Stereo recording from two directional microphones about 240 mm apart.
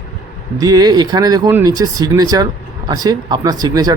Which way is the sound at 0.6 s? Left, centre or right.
Centre.